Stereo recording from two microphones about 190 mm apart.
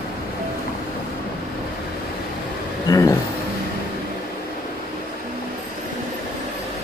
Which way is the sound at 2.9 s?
15° left (ahead or behind).